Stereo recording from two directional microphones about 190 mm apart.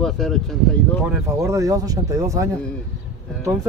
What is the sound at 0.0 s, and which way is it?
Speech, centre (ahead or behind).